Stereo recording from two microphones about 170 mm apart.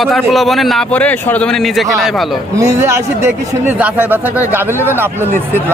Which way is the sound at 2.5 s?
20° right (ahead or behind).